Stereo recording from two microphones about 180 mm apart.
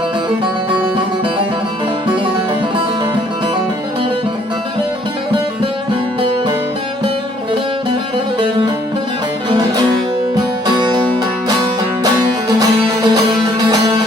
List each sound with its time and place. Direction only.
8.4 s music: 25° right (ahead or behind)
12.5 s music: 20° right (ahead or behind)